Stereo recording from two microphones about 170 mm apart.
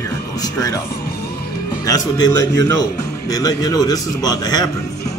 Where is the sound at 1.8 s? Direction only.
20° left (ahead or behind).